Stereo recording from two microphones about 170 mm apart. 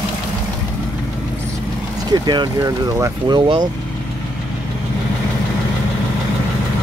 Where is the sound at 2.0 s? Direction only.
25° right (ahead or behind).